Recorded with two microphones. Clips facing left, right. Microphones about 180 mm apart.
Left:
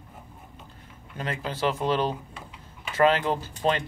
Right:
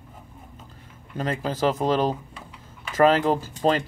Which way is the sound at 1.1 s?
40° right (ahead or behind).